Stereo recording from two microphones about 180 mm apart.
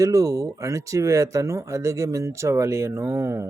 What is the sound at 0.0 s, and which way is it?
Speech, 15° right (ahead or behind).